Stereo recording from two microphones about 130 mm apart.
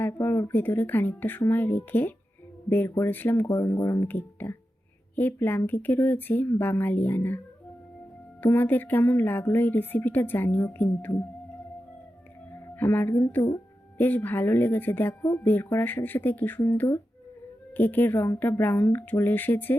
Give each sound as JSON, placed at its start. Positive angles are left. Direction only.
{"t": 0.1, "sound": "speech", "side_deg": 20}
{"t": 8.4, "sound": "speech", "side_deg": 15}
{"t": 12.7, "sound": "speech", "side_deg": 15}